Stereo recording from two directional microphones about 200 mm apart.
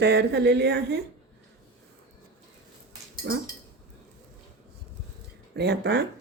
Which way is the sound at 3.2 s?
65° right (ahead or behind).